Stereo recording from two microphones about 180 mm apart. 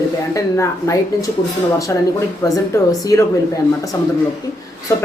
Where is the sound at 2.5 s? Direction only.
20° left (ahead or behind).